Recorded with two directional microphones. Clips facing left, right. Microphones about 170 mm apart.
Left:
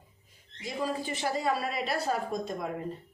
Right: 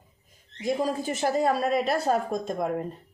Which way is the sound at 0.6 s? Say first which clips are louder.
Right 6 dB; 45° right (ahead or behind).